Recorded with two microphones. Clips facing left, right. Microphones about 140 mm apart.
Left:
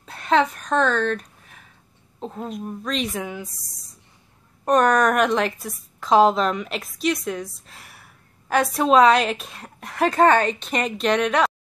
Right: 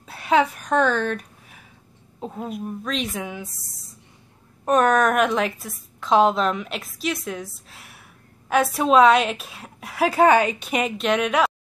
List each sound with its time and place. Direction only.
0.0 s a sound: 5° right (ahead or behind)
2.1 s a woman's voice: 5° right (ahead or behind)
4.6 s a woman's voice: 5° right (ahead or behind)